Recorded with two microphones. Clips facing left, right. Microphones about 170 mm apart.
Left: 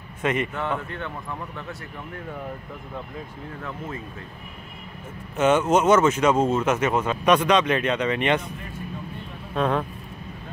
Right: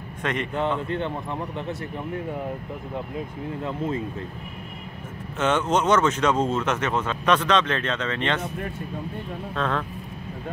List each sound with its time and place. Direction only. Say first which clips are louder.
0.2 s speech: left 3 dB; 5° left (ahead or behind)
0.6 s speech: right 4 dB; 20° right (ahead or behind)
5.4 s speech: left 3 dB; 10° left (ahead or behind)
9.5 s speech: left 4 dB; 15° left (ahead or behind)